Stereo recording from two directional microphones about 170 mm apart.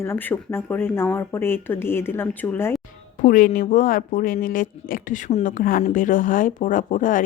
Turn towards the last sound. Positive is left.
turn(degrees=50)  # may be behind; listen again after turning